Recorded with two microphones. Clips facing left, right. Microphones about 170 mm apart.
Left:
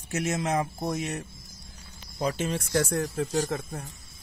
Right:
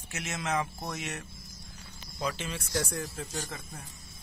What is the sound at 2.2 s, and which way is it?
Speech, 45° left (ahead or behind).